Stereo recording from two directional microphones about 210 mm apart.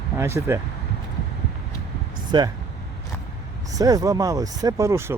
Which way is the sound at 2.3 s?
20° right (ahead or behind).